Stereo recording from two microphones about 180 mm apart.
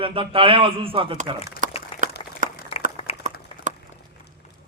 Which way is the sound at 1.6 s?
45° right (ahead or behind).